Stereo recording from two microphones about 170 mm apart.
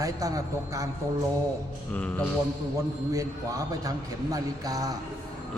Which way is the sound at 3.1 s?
20° right (ahead or behind).